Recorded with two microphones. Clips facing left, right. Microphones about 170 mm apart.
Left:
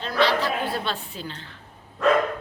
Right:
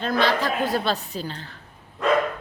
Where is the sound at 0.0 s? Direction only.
50° right (ahead or behind).